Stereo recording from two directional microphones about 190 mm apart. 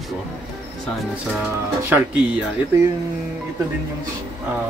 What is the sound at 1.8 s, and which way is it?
Speech, 10° right (ahead or behind).